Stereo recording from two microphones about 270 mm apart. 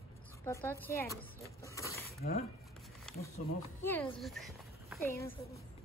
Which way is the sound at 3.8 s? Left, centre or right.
Centre.